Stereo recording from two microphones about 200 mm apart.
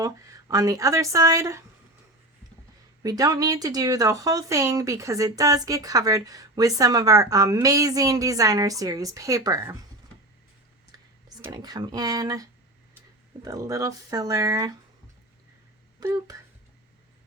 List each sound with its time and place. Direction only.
0.0 s speech: 15° right (ahead or behind)
3.0 s speech: 20° right (ahead or behind)
10.9 s a sound: 20° right (ahead or behind)
11.4 s speech: 20° right (ahead or behind)
16.0 s speech: 15° right (ahead or behind)